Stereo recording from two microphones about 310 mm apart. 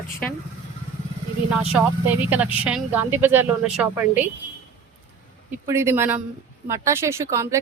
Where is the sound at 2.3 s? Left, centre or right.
Centre.